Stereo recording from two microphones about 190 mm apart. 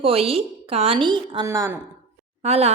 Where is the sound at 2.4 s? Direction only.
35° right (ahead or behind).